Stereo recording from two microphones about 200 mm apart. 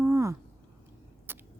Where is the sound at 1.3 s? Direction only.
10° right (ahead or behind).